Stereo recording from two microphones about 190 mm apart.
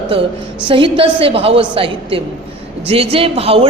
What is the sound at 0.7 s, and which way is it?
A woman's voice, 25° right (ahead or behind).